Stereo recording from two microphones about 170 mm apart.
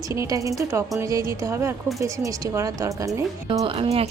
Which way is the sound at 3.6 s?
35° right (ahead or behind).